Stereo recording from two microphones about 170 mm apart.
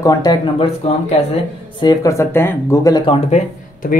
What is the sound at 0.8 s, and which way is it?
Speech, 35° left (ahead or behind).